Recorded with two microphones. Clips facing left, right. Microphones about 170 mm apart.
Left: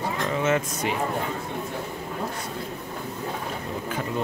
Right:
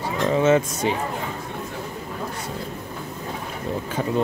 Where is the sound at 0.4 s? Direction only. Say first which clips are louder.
Right 6 dB; 30° right (ahead or behind).